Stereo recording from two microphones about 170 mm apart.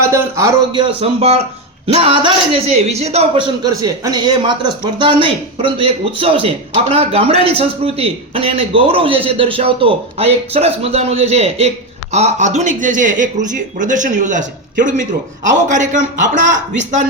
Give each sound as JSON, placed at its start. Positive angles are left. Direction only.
{"t": 0.1, "sound": "a man's voice", "side_deg": -15}
{"t": 0.9, "sound": "a man's voice", "side_deg": -35}